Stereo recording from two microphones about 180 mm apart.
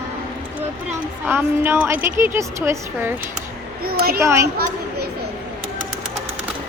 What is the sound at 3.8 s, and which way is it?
Speech, 55° right (ahead or behind).